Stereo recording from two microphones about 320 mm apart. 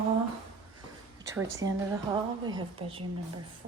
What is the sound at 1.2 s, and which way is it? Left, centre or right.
A woman's voice, centre.